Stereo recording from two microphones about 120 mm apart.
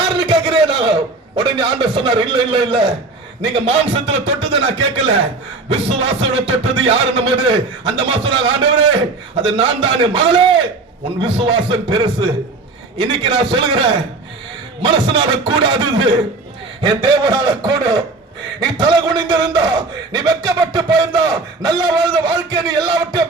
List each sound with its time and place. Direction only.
0.2 s a sound: 45° right (ahead or behind)
1.4 s speech: 45° right (ahead or behind)
3.5 s a man's voice: 55° right (ahead or behind); by 23.2 s 35° right (ahead or behind)